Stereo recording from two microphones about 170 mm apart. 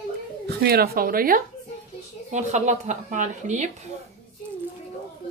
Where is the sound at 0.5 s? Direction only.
65° right (ahead or behind).